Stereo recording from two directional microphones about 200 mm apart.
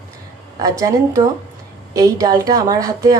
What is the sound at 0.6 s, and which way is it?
A woman's voice, 15° right (ahead or behind).